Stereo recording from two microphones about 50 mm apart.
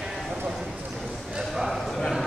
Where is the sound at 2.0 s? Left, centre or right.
Centre.